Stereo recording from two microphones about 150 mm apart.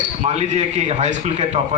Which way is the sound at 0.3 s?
45° right (ahead or behind).